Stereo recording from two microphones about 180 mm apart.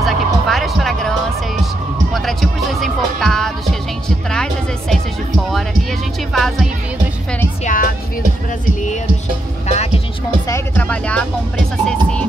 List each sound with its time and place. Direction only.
0.0 s music: centre (ahead or behind)
2.1 s music: centre (ahead or behind)
6.3 s music: centre (ahead or behind)
7.6 s music: 50° left (ahead or behind)
9.7 s music: 35° left (ahead or behind)
10.5 s music: 10° left (ahead or behind)